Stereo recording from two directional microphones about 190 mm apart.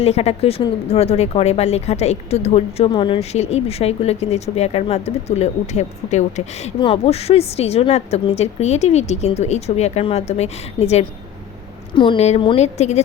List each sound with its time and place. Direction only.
0.0 s speech: 35° left (ahead or behind)